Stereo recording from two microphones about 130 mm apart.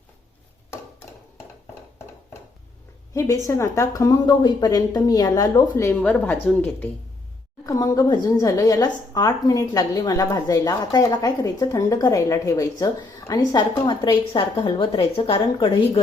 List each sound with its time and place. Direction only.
3.2 s speech: 25° left (ahead or behind)
6.0 s speech: 10° left (ahead or behind)
7.6 s speech: 25° left (ahead or behind); by 16.0 s 45° left (ahead or behind)